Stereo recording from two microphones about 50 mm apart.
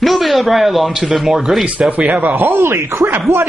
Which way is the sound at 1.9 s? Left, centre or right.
Right.